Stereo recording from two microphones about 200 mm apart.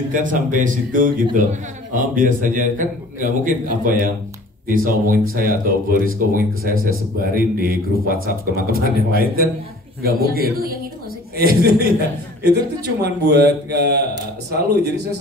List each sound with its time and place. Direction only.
0.1 s a man's voice: 40° right (ahead or behind)